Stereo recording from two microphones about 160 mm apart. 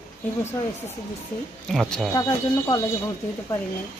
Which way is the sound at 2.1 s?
20° left (ahead or behind).